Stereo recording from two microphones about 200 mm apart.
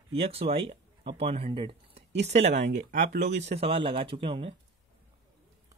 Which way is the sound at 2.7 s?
40° right (ahead or behind).